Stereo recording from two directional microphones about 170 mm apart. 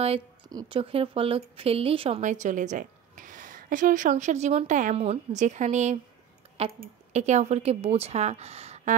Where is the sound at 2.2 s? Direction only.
45° right (ahead or behind).